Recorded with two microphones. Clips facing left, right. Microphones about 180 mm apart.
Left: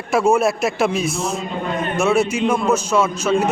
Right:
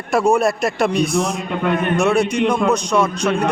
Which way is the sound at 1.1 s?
60° right (ahead or behind).